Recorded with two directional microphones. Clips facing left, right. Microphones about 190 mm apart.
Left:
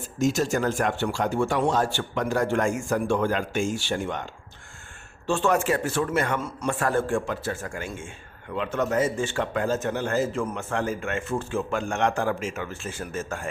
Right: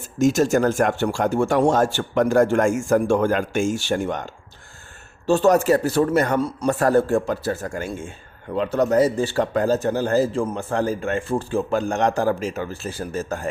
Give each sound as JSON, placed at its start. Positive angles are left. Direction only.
{"t": 0.2, "sound": "a man's voice", "side_deg": -45}